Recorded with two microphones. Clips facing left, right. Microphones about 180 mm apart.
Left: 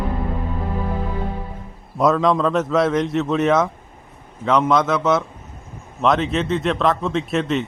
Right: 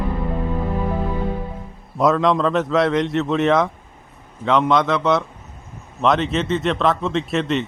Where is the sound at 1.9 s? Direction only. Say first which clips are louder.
Even; centre (ahead or behind).